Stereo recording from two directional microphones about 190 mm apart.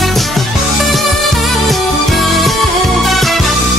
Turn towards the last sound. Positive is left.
turn(degrees=0)  # may be behind; listen again after turning